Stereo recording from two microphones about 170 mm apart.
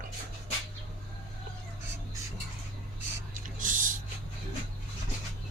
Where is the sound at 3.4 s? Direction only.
50° right (ahead or behind).